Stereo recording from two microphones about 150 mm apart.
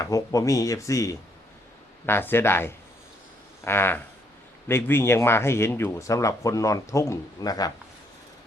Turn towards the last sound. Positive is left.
turn(degrees=25)  # may be behind; listen again after turning